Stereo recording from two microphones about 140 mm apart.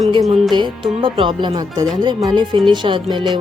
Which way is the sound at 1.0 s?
35° right (ahead or behind).